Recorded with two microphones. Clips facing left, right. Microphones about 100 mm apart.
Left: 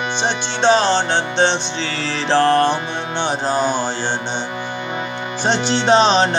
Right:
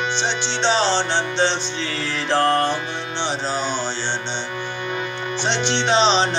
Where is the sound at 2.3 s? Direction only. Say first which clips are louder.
Left 4 dB; 90° left.